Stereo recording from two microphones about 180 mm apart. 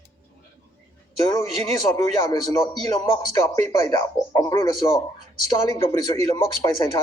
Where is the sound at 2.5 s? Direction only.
20° left (ahead or behind).